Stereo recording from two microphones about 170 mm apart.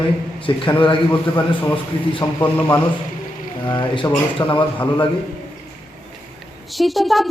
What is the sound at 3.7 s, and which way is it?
Speech, 25° left (ahead or behind).